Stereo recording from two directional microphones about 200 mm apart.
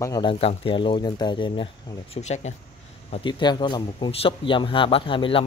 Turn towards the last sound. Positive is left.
turn(degrees=25)  # may be behind; listen again after turning